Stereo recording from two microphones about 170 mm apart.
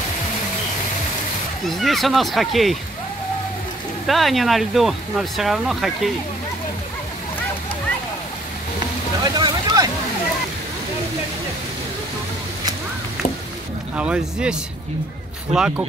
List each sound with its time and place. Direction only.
1.7 s speech: centre (ahead or behind)
4.1 s speech: centre (ahead or behind)
9.2 s vehicle: 25° right (ahead or behind)
13.9 s speech: 5° right (ahead or behind)